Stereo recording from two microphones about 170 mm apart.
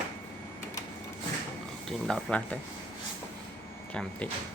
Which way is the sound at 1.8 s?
5° left (ahead or behind).